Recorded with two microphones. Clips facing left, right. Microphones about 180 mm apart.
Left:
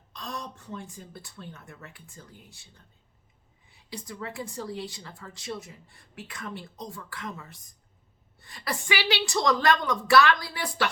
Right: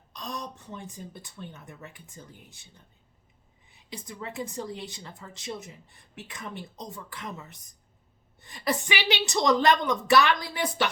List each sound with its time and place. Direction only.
0.1 s a woman's voice: 15° right (ahead or behind)
3.8 s a woman's voice: 20° right (ahead or behind)